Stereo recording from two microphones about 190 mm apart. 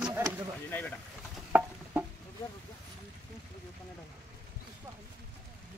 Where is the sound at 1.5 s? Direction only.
10° right (ahead or behind).